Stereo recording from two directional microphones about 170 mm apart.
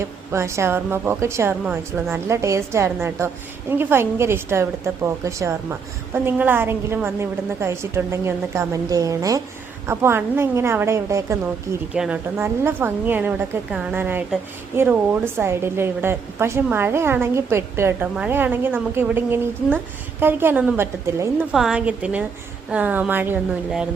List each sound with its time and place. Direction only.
0.0 s a woman's voice: 15° right (ahead or behind)
11.9 s a woman's voice: 5° right (ahead or behind)
21.5 s a woman's voice: 5° right (ahead or behind)